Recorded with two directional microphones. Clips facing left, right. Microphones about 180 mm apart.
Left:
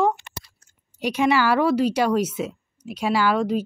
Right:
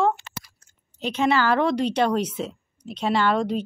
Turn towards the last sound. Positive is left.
turn(degrees=5)  # may be behind; listen again after turning